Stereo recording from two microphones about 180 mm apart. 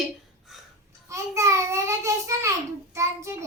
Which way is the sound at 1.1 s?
15° right (ahead or behind).